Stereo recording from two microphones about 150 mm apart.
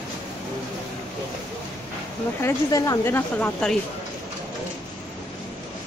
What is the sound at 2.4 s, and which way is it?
A woman's voice, 20° left (ahead or behind).